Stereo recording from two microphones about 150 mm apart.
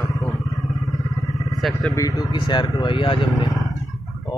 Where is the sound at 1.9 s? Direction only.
25° left (ahead or behind).